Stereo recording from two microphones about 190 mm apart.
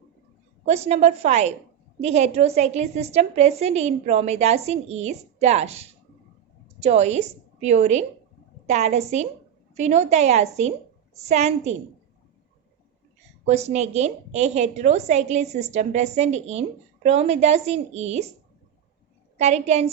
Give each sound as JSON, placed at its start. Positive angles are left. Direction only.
{"t": 0.6, "sound": "a woman's voice", "side_deg": -35}
{"t": 13.4, "sound": "a woman's voice", "side_deg": -35}
{"t": 19.4, "sound": "a woman's voice", "side_deg": -35}